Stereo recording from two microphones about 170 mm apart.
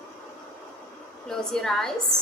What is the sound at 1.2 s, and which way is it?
Speech, 5° left (ahead or behind).